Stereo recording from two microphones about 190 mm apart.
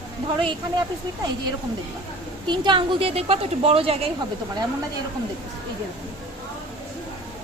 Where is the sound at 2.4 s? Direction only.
25° right (ahead or behind).